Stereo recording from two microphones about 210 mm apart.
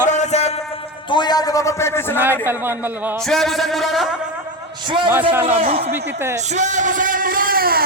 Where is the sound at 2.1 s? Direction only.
10° right (ahead or behind).